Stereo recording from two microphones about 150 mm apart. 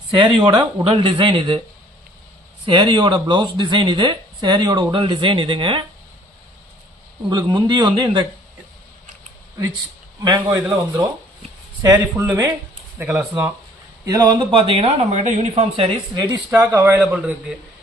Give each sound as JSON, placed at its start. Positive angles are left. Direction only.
{"t": 0.1, "sound": "speech", "side_deg": -35}
{"t": 2.6, "sound": "speech", "side_deg": -35}
{"t": 7.3, "sound": "speech", "side_deg": -30}
{"t": 10.2, "sound": "speech", "side_deg": -25}
{"t": 10.6, "sound": "speech", "side_deg": -10}
{"t": 11.8, "sound": "speech", "side_deg": -20}
{"t": 14.0, "sound": "speech", "side_deg": -25}
{"t": 16.1, "sound": "speech", "side_deg": -25}
{"t": 16.5, "sound": "speech", "side_deg": -10}